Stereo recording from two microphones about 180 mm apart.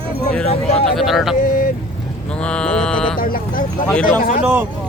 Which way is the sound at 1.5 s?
50° left (ahead or behind).